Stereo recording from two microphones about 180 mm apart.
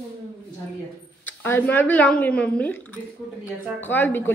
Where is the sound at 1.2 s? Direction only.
10° left (ahead or behind).